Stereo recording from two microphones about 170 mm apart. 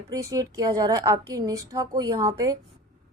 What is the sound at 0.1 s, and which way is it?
A woman's voice, 20° right (ahead or behind).